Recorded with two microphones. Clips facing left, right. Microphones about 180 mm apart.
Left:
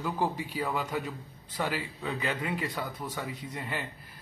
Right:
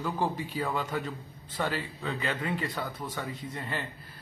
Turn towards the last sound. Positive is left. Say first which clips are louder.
# right 1 dB
turn(degrees=10)  # may be behind; listen again after turning